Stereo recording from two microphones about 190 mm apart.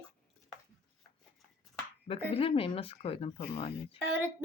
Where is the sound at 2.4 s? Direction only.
30° left (ahead or behind).